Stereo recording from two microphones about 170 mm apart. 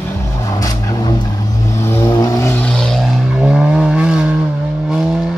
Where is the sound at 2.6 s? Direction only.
5° left (ahead or behind).